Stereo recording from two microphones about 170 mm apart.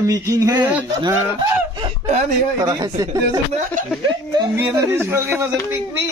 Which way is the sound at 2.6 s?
20° right (ahead or behind).